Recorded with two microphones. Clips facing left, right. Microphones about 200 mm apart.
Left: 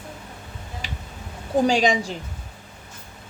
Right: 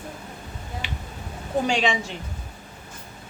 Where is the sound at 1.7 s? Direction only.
40° left (ahead or behind).